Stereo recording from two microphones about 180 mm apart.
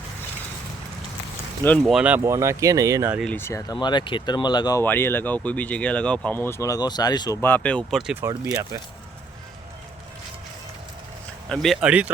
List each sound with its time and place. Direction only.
1.9 s speech: 5° right (ahead or behind)
3.2 s speech: 10° left (ahead or behind)
7.4 s speech: 10° left (ahead or behind)
8.4 s speech: 15° right (ahead or behind)
11.4 s speech: centre (ahead or behind)